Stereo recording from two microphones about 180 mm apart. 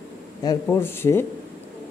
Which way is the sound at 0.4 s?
15° left (ahead or behind).